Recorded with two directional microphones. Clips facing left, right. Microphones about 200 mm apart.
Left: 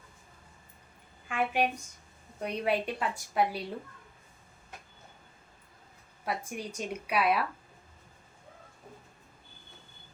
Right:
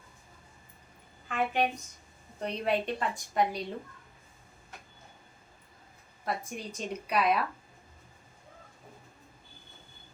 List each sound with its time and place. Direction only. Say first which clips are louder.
1.3 s a woman's voice: even; 10° left (ahead or behind)
6.2 s a woman's voice: even; 10° left (ahead or behind)